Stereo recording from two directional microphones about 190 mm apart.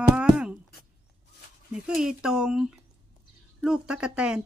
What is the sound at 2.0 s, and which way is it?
Speech, 5° right (ahead or behind).